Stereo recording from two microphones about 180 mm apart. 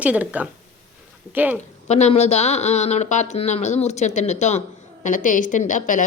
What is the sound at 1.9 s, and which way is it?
A woman's voice, 40° left (ahead or behind).